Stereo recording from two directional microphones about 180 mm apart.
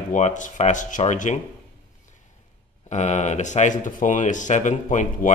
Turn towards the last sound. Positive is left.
turn(degrees=45)  # may be behind; listen again after turning